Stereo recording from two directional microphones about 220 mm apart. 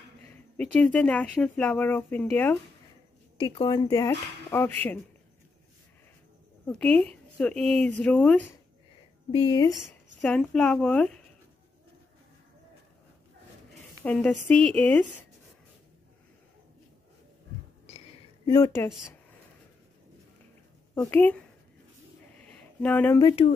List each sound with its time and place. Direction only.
0.7 s speech: 5° left (ahead or behind)
3.3 s speech: 20° left (ahead or behind)
6.7 s speech: 5° left (ahead or behind)
9.3 s a woman's voice: 20° left (ahead or behind)
9.7 s speech: centre (ahead or behind)
14.0 s speech: 5° left (ahead or behind)
18.5 s speech: 10° left (ahead or behind)
20.9 s speech: 10° left (ahead or behind)
22.4 s a sound: 5° left (ahead or behind)